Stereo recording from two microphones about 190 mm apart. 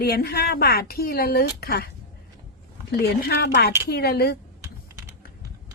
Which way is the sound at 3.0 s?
55° left (ahead or behind).